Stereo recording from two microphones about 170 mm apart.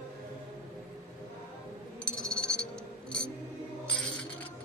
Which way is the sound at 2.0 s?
5° left (ahead or behind).